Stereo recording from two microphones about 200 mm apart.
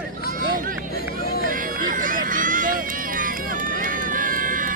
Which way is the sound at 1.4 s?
45° right (ahead or behind).